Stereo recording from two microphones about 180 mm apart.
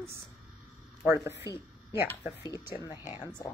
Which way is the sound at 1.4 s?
15° right (ahead or behind).